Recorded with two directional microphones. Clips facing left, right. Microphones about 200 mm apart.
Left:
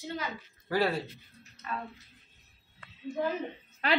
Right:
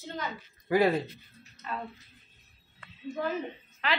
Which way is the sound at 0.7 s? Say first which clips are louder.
Right 4 dB; 15° right (ahead or behind).